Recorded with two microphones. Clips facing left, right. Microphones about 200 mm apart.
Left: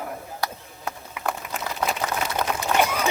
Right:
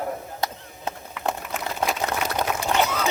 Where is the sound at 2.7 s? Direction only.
10° left (ahead or behind).